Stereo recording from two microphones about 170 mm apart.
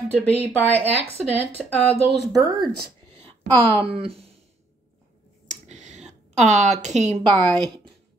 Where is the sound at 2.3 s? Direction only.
20° right (ahead or behind).